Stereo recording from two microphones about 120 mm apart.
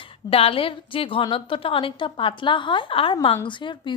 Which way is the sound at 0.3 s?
55° left (ahead or behind).